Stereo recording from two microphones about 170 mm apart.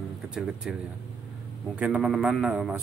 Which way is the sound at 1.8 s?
5° right (ahead or behind).